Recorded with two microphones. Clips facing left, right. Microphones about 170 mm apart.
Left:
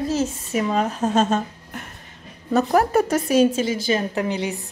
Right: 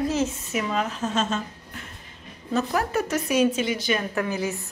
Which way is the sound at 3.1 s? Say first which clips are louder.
Left 4 dB; 35° left (ahead or behind).